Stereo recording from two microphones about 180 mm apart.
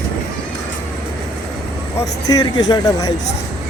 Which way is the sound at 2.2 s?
20° left (ahead or behind).